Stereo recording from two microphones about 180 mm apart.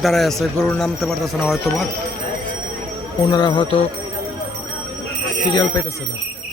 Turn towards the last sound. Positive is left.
turn(degrees=20)  # may be behind; listen again after turning